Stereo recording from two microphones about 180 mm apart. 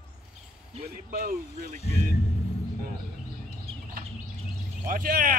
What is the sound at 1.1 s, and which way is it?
Speech, 55° right (ahead or behind).